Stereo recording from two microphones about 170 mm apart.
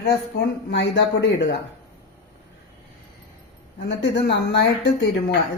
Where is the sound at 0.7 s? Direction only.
90° left.